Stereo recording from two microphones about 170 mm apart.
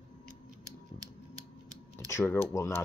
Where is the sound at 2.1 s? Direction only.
15° left (ahead or behind).